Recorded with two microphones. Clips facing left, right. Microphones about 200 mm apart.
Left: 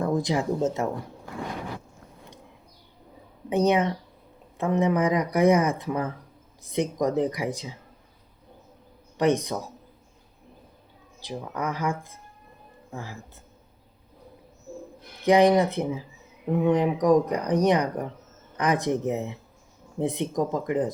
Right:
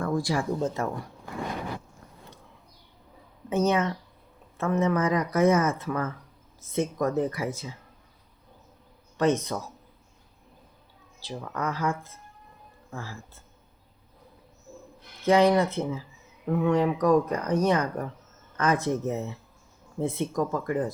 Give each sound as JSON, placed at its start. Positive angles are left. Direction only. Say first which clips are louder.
{"t": 0.0, "sound": "speech", "louder": "left 2 dB", "side_deg": 20}
{"t": 3.5, "sound": "speech", "louder": "left 2 dB", "side_deg": 15}
{"t": 9.1, "sound": "speech", "louder": "left 1 dB", "side_deg": 15}
{"t": 11.2, "sound": "speech", "louder": "left 1 dB", "side_deg": 15}
{"t": 15.2, "sound": "speech", "louder": "left 2 dB", "side_deg": 15}